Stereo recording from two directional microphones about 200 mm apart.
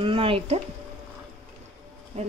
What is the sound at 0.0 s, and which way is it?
Speech, 25° right (ahead or behind).